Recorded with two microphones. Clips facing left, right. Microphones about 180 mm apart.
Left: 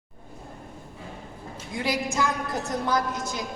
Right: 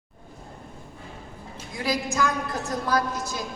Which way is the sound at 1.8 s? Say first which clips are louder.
Right 1 dB; 25° left (ahead or behind).